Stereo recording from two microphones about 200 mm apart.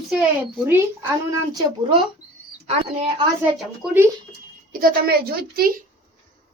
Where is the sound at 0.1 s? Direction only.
5° right (ahead or behind).